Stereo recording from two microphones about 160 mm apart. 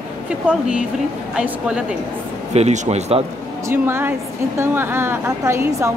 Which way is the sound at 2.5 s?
45° right (ahead or behind).